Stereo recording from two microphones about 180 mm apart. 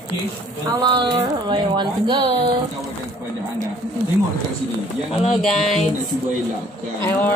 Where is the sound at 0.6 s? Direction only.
25° right (ahead or behind).